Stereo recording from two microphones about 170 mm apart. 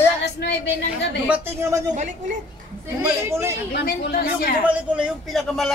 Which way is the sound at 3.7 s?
65° left (ahead or behind).